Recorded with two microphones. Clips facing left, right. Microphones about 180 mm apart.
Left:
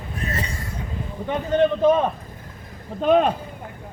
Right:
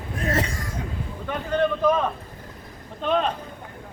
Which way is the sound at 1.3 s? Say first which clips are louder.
Left 4 dB; 25° left (ahead or behind).